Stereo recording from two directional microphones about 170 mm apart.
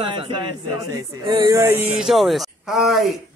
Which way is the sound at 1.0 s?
20° right (ahead or behind).